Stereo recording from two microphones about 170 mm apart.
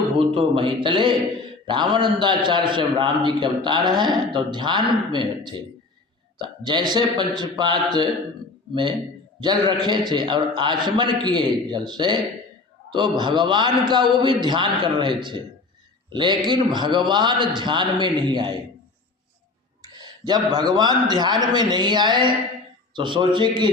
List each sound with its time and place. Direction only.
0.2 s a man's voice: 35° right (ahead or behind)
19.8 s a man's voice: 25° right (ahead or behind)